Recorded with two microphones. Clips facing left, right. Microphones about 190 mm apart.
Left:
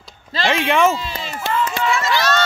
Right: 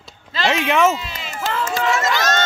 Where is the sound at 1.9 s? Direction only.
45° right (ahead or behind).